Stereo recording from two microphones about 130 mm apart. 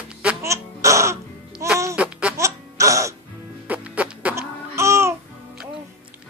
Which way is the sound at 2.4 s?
25° right (ahead or behind).